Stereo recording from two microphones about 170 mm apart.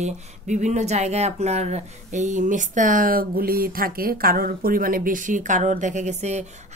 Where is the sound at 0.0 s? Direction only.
45° right (ahead or behind).